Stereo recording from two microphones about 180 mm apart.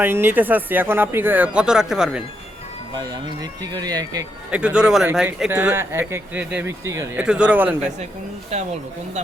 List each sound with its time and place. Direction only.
0.0 s speech: 10° right (ahead or behind)
2.9 s speech: 20° right (ahead or behind)
4.5 s speech: 5° right (ahead or behind)
8.5 s speech: 35° right (ahead or behind)